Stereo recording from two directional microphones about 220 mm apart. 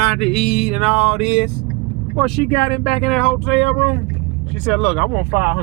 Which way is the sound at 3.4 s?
55° right (ahead or behind).